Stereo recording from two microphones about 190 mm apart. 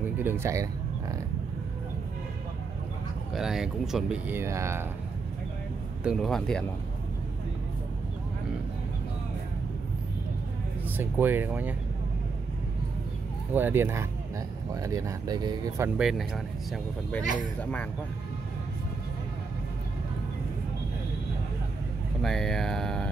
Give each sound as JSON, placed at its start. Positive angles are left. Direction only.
{"t": 0.2, "sound": "speech", "side_deg": -10}
{"t": 3.3, "sound": "speech", "side_deg": 0}
{"t": 6.0, "sound": "speech", "side_deg": 0}
{"t": 11.0, "sound": "speech", "side_deg": -10}
{"t": 13.5, "sound": "speech", "side_deg": -10}
{"t": 16.0, "sound": "speech", "side_deg": 0}
{"t": 22.2, "sound": "speech", "side_deg": 0}